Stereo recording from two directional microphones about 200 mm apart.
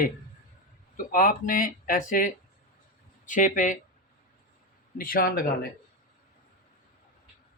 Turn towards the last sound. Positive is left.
turn(degrees=45)  # may be behind; listen again after turning